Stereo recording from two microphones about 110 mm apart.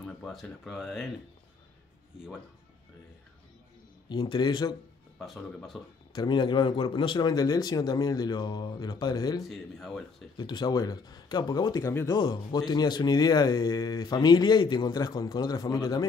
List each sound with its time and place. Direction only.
0.0 s speech: centre (ahead or behind)
4.1 s a man's voice: 45° left (ahead or behind)
5.2 s speech: centre (ahead or behind)
6.1 s speech: 45° left (ahead or behind)
9.5 s speech: centre (ahead or behind)
10.3 s speech: 45° left (ahead or behind)